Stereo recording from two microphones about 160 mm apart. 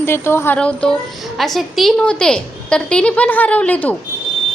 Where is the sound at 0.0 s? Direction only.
15° left (ahead or behind).